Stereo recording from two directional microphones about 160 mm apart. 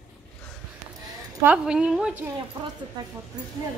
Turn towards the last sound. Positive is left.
turn(degrees=-25)  # may be behind; listen again after turning